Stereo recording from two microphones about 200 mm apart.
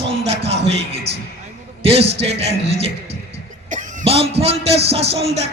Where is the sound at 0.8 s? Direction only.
30° right (ahead or behind).